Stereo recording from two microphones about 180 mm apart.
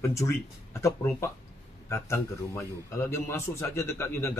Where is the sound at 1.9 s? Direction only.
15° left (ahead or behind).